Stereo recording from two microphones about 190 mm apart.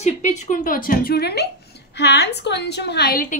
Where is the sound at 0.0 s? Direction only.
40° left (ahead or behind).